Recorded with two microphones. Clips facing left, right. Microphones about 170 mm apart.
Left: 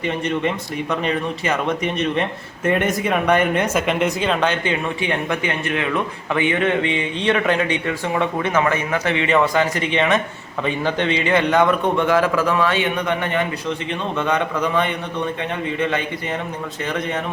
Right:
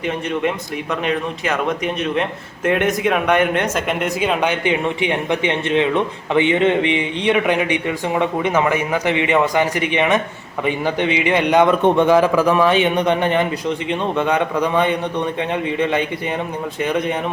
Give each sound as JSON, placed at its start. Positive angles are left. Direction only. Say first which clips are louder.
{"t": 1.0, "sound": "speech", "louder": "right 3 dB", "side_deg": 0}